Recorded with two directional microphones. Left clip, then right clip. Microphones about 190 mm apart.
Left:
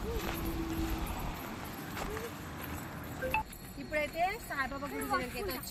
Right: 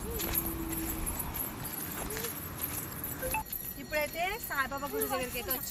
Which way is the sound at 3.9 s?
5° left (ahead or behind).